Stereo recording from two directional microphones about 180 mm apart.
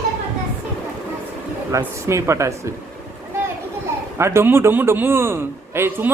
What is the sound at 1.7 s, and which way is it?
Speech, 15° right (ahead or behind).